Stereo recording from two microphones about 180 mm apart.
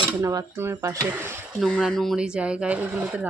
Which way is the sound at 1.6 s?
Centre (ahead or behind).